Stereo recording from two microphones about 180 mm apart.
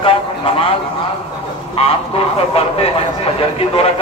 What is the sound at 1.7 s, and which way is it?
Speech, 35° left (ahead or behind).